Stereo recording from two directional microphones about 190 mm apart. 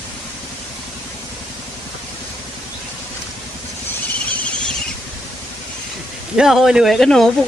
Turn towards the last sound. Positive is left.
turn(degrees=0)  # may be behind; listen again after turning